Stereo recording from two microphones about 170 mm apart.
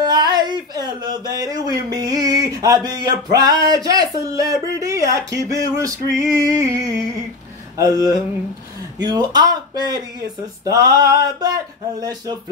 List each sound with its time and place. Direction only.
0.0 s speech: 25° right (ahead or behind)
7.7 s a sound: 20° right (ahead or behind)
9.0 s speech: 25° right (ahead or behind)